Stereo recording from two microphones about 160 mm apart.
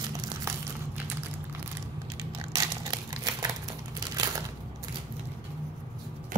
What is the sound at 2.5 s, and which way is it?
Crumpling, 25° right (ahead or behind).